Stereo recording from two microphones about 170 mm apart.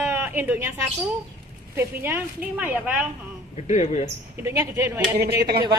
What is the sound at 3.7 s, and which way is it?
Speech, 40° left (ahead or behind).